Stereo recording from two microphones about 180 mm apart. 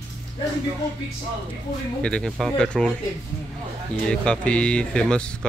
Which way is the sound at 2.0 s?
5° left (ahead or behind).